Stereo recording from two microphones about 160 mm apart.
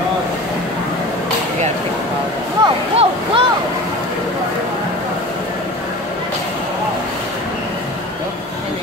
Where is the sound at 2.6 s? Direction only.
35° right (ahead or behind).